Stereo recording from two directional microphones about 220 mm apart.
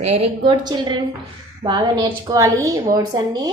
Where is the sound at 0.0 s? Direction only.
30° right (ahead or behind).